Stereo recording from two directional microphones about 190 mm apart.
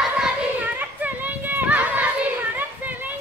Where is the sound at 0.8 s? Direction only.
10° right (ahead or behind).